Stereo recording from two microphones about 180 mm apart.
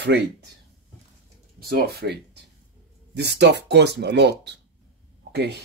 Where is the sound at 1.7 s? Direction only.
60° right (ahead or behind).